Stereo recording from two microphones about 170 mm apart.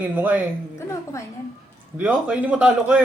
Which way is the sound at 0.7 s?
15° left (ahead or behind).